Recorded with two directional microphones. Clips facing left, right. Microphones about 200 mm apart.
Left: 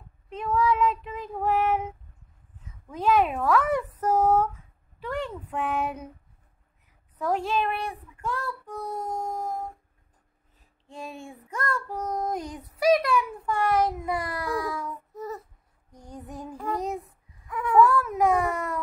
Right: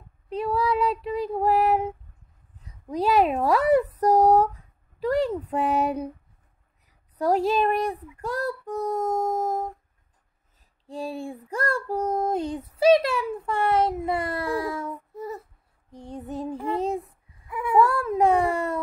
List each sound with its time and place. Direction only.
0.3 s child singing: 35° right (ahead or behind)
2.6 s a child's voice: 35° right (ahead or behind)
7.2 s a child's voice: 35° right (ahead or behind)
10.9 s child singing: 35° right (ahead or behind)
17.5 s a sound: 10° right (ahead or behind)
17.7 s child singing: 25° right (ahead or behind)